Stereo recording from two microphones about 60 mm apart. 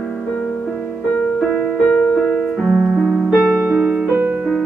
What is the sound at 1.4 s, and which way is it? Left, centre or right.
Music, centre.